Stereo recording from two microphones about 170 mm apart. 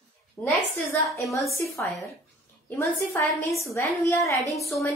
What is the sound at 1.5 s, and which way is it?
A woman's voice, 15° left (ahead or behind).